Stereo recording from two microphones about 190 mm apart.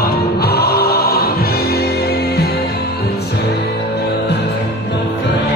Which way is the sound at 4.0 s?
60° left (ahead or behind).